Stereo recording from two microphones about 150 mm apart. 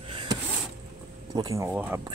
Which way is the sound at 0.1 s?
35° right (ahead or behind).